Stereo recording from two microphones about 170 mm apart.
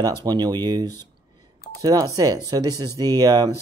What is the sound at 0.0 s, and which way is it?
Speech, 25° right (ahead or behind).